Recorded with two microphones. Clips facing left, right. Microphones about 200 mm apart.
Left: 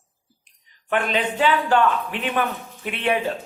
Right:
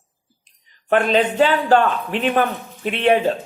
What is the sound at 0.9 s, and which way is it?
Speech, 35° right (ahead or behind).